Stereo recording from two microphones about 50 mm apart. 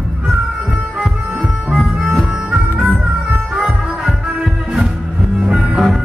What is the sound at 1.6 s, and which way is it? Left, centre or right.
Music, centre.